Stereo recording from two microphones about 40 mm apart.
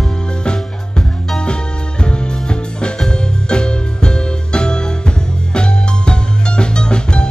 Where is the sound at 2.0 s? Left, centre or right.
Left.